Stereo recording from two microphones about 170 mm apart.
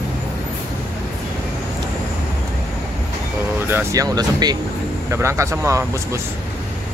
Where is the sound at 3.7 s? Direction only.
15° right (ahead or behind).